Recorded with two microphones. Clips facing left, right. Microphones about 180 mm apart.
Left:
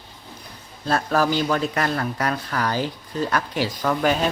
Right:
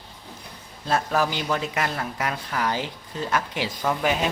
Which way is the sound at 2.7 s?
40° left (ahead or behind).